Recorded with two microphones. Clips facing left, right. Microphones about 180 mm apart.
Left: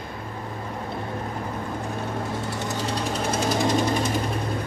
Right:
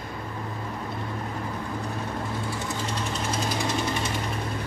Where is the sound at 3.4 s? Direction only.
45° left (ahead or behind).